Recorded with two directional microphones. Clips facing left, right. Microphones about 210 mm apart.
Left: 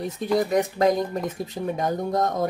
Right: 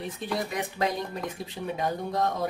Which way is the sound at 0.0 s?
40° left (ahead or behind).